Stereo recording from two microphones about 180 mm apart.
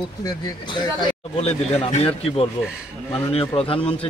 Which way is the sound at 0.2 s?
25° left (ahead or behind).